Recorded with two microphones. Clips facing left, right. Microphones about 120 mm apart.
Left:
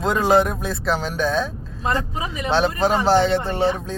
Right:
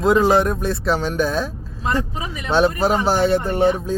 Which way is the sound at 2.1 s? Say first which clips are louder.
Left 2 dB; 35° left (ahead or behind).